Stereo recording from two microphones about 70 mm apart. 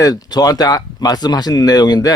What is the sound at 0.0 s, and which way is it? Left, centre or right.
Speech, left.